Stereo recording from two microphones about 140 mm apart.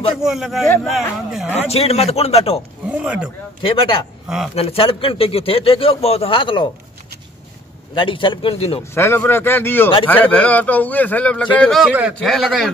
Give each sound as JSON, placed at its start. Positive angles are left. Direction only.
{"t": 0.1, "sound": "a man's voice", "side_deg": 0}
{"t": 1.5, "sound": "speech", "side_deg": 45}
{"t": 2.9, "sound": "speech", "side_deg": -5}
{"t": 3.6, "sound": "speech", "side_deg": 40}
{"t": 7.9, "sound": "speech", "side_deg": 35}
{"t": 8.9, "sound": "a man's voice", "side_deg": 15}